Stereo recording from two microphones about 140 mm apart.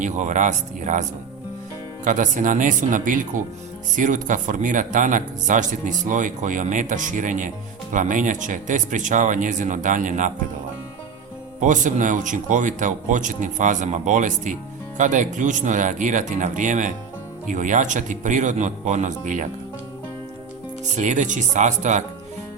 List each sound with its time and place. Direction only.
0.0 s speech: 60° right (ahead or behind)
2.0 s speech: 65° right (ahead or behind)
11.6 s speech: 65° right (ahead or behind)
20.9 s speech: 60° right (ahead or behind)